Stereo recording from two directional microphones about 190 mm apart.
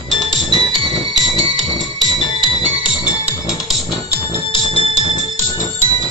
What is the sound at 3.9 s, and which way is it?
Music, 25° left (ahead or behind).